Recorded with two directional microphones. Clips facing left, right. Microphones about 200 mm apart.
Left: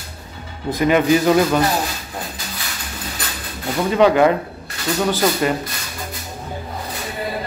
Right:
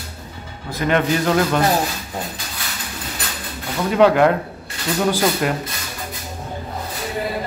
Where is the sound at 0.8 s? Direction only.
5° left (ahead or behind).